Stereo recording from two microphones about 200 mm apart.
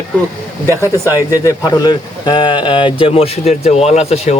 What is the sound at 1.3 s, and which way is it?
A man's voice, 15° left (ahead or behind).